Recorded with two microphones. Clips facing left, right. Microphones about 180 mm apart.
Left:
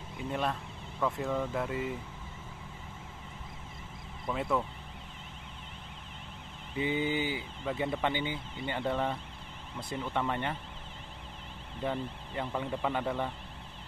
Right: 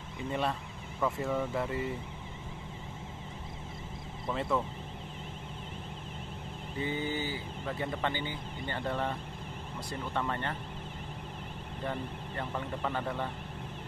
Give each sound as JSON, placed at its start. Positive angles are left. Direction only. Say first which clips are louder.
{"t": 0.3, "sound": "speech", "louder": "even", "side_deg": 0}
{"t": 4.3, "sound": "speech", "louder": "even", "side_deg": 0}
{"t": 6.8, "sound": "speech", "louder": "left 3 dB", "side_deg": 15}
{"t": 10.2, "sound": "speech", "louder": "left 2 dB", "side_deg": 15}
{"t": 12.4, "sound": "speech", "louder": "left 3 dB", "side_deg": 10}